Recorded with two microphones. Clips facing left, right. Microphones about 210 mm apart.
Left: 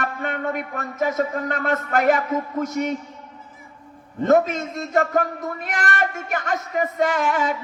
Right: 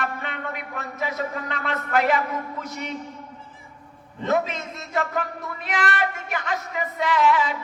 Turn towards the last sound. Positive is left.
turn(degrees=45)  # may be behind; listen again after turning